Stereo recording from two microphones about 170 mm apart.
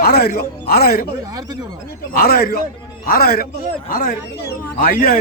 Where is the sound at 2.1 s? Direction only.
60° left (ahead or behind).